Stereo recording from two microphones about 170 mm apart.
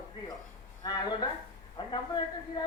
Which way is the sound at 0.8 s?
25° left (ahead or behind).